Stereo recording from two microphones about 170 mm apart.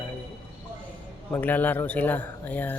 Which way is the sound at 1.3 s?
10° left (ahead or behind).